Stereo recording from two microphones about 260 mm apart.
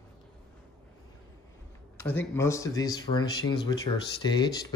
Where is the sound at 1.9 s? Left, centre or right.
Centre.